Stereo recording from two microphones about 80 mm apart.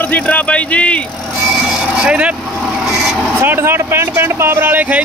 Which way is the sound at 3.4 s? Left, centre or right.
Right.